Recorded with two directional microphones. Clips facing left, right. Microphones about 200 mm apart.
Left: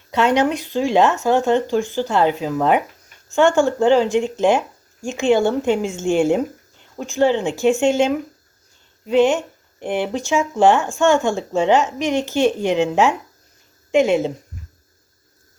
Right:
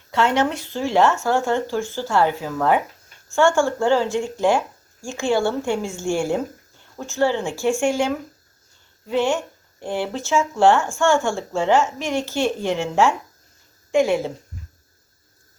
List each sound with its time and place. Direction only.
0.1 s speech: 15° left (ahead or behind)